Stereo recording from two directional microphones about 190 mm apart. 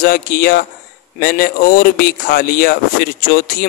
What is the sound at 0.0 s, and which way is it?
Speech, 50° left (ahead or behind).